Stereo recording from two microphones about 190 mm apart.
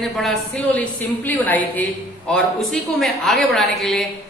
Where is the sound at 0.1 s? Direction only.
Centre (ahead or behind).